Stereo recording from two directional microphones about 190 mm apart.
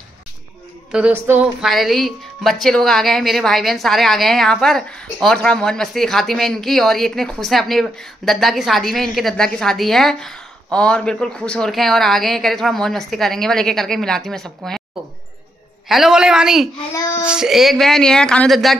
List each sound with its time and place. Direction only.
0.9 s a woman's voice: 10° right (ahead or behind)
15.9 s a woman's voice: centre (ahead or behind)
16.7 s a child's voice: 15° left (ahead or behind)
17.2 s a woman's voice: 5° right (ahead or behind)